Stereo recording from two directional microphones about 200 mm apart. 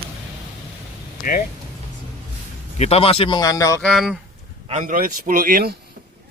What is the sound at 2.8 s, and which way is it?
A man's voice, 30° left (ahead or behind).